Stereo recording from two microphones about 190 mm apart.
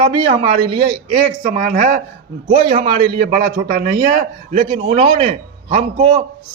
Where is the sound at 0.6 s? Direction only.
55° right (ahead or behind).